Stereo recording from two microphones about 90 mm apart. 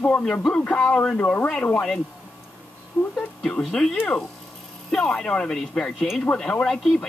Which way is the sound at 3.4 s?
5° left (ahead or behind).